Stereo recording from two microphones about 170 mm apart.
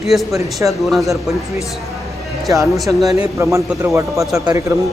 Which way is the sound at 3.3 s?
15° right (ahead or behind).